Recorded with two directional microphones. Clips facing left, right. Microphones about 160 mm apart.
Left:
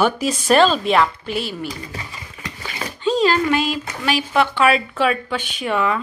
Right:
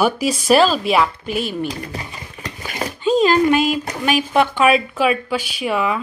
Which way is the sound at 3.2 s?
15° right (ahead or behind).